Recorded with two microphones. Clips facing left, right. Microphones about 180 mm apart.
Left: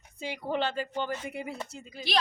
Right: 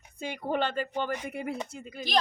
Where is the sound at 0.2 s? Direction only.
50° right (ahead or behind).